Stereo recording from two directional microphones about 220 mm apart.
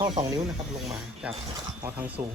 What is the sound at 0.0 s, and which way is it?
Speech, 20° right (ahead or behind).